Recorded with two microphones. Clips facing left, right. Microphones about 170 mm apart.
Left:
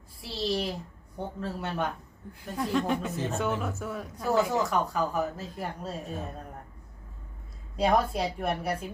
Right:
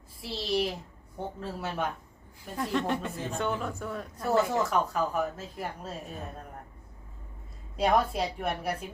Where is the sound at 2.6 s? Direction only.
Centre (ahead or behind).